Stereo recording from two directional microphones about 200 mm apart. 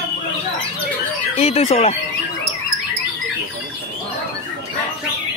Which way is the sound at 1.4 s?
30° left (ahead or behind).